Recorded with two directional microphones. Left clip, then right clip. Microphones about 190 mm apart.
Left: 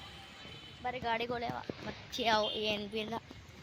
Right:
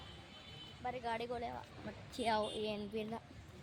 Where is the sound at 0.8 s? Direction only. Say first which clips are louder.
Left 5 dB; 40° left (ahead or behind).